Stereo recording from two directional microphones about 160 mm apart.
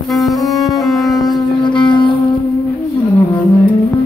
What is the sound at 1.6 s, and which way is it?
Shofar, 30° left (ahead or behind).